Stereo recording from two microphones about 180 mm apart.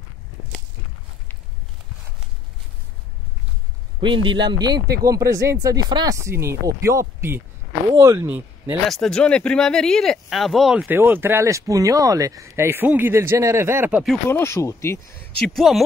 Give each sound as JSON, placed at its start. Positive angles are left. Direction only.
{"t": 4.0, "sound": "speech", "side_deg": -25}
{"t": 8.8, "sound": "speech", "side_deg": 0}
{"t": 14.3, "sound": "speech", "side_deg": 15}